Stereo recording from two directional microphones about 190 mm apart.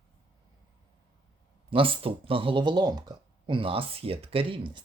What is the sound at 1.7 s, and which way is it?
Speech, 30° right (ahead or behind).